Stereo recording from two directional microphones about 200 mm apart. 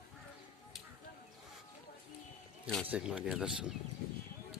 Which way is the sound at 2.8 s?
5° right (ahead or behind).